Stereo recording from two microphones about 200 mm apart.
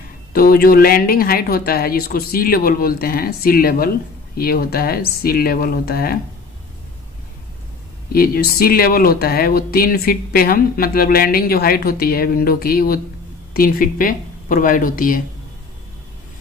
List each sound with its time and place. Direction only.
0.3 s speech: 50° left (ahead or behind)
8.1 s speech: 50° left (ahead or behind)